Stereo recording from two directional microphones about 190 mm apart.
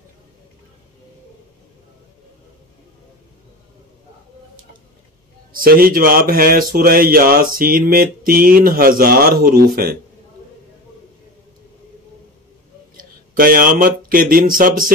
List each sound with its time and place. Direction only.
5.5 s speech: 50° right (ahead or behind)
12.9 s speech: 50° right (ahead or behind)